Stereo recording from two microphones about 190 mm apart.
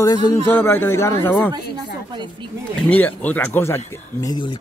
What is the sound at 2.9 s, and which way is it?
Speech, 10° left (ahead or behind).